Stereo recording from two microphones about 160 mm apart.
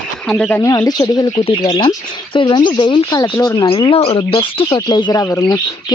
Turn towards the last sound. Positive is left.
turn(degrees=20)  # may be behind; listen again after turning